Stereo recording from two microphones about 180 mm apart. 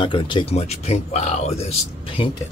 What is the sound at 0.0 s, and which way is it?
Speech, 25° left (ahead or behind).